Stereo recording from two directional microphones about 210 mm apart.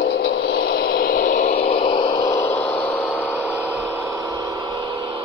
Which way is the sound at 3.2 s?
10° right (ahead or behind).